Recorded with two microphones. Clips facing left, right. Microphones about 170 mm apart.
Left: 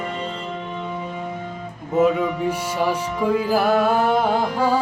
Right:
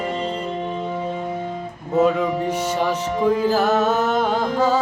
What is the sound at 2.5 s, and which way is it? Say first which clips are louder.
Music: right 1 dB; 10° left (ahead or behind).